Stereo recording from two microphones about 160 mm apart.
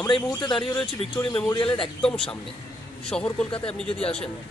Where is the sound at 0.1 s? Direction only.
30° left (ahead or behind).